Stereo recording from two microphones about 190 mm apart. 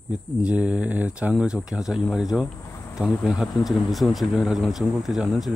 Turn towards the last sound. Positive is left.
turn(degrees=0)  # may be behind; listen again after turning